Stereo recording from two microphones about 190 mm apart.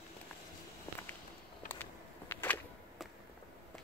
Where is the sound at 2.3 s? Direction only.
10° left (ahead or behind).